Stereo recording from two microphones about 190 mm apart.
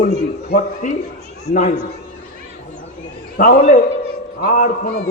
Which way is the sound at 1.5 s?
40° left (ahead or behind).